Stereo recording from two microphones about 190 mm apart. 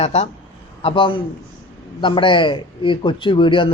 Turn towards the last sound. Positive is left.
turn(degrees=25)  # may be behind; listen again after turning